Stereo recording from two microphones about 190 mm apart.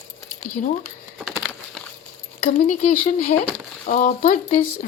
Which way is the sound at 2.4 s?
40° left (ahead or behind).